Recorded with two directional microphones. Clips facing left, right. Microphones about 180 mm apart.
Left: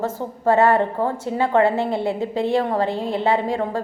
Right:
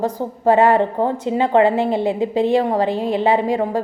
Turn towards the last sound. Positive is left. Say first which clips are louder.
# right 3 dB
turn(degrees=-15)  # may be behind; listen again after turning